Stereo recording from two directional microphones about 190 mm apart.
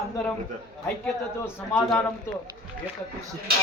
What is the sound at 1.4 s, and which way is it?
Speech, 10° left (ahead or behind).